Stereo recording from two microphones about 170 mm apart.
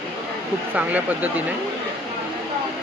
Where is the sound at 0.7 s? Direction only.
10° right (ahead or behind).